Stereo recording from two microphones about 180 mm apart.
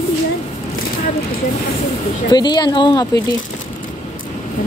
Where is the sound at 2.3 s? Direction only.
25° left (ahead or behind).